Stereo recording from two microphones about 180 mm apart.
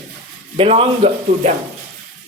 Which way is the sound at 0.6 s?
35° right (ahead or behind).